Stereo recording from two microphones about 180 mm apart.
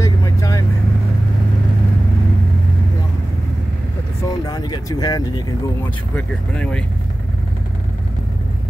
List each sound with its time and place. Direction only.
0.0 s vehicle: 20° left (ahead or behind)
4.2 s vehicle: 20° left (ahead or behind)
6.1 s speech: 5° left (ahead or behind)